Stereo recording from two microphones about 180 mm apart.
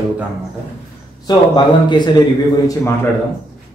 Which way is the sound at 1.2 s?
25° left (ahead or behind).